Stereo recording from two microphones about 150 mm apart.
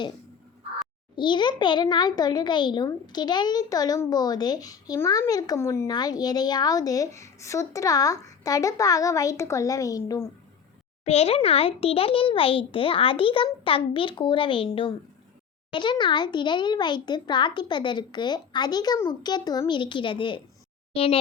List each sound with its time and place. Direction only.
1.1 s speech: 30° left (ahead or behind)
11.0 s a child's voice: 45° left (ahead or behind)